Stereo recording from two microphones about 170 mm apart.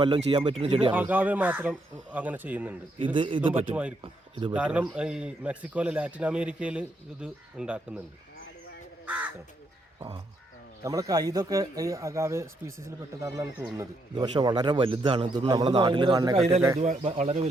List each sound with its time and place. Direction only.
0.3 s speech: 25° right (ahead or behind)
0.9 s a man's voice: 10° right (ahead or behind)
3.0 s speech: 30° right (ahead or behind)
3.5 s a man's voice: 10° right (ahead or behind)
4.0 s speech: 30° right (ahead or behind)
4.5 s a man's voice: 5° right (ahead or behind)
9.0 s crow: 10° right (ahead or behind)
10.8 s speech: 20° right (ahead or behind)
16.8 s speech: 40° right (ahead or behind)